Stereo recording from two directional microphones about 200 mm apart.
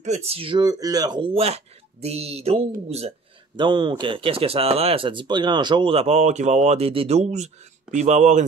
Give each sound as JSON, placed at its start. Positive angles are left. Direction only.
{"t": 0.0, "sound": "speech", "side_deg": -35}